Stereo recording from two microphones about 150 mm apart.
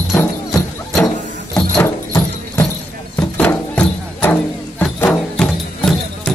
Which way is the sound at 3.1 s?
10° left (ahead or behind).